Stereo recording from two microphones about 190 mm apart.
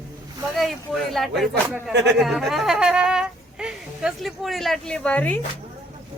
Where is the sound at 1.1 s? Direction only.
Centre (ahead or behind).